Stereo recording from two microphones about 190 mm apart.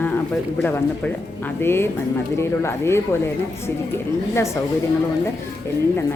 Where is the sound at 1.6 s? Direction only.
10° left (ahead or behind).